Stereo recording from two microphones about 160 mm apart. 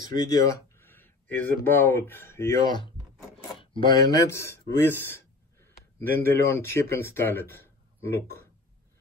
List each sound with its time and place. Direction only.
0.1 s speech: 20° left (ahead or behind)
2.7 s speech: 25° left (ahead or behind)